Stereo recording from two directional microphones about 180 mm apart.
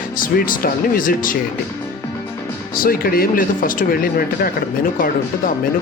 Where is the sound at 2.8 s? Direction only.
55° left (ahead or behind).